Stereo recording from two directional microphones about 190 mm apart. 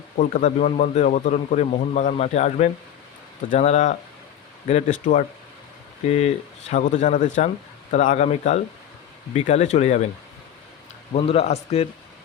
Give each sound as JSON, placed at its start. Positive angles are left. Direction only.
{"t": 0.2, "sound": "speech", "side_deg": 40}
{"t": 11.1, "sound": "speech", "side_deg": 30}